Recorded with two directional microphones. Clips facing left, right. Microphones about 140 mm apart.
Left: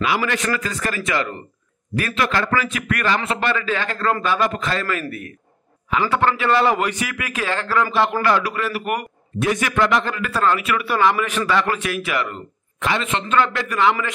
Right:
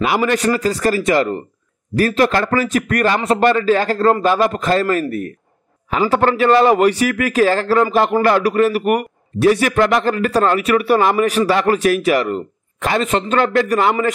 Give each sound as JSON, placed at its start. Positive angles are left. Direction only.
{"t": 0.0, "sound": "a man's voice", "side_deg": -45}